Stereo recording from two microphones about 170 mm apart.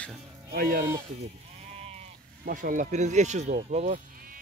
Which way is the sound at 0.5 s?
60° right (ahead or behind).